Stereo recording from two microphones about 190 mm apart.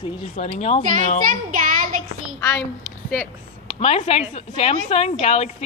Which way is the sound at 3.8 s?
30° left (ahead or behind).